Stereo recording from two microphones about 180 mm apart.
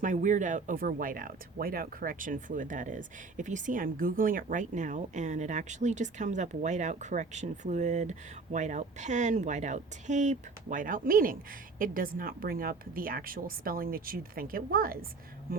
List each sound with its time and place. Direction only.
0.0 s speech: 45° right (ahead or behind)